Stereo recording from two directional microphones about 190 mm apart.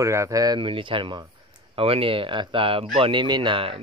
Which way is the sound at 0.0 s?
15° right (ahead or behind).